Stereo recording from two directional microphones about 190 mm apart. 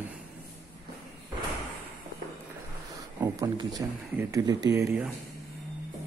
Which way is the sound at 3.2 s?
20° right (ahead or behind).